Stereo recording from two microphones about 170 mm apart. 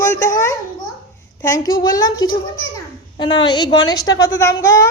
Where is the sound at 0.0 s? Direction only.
20° left (ahead or behind).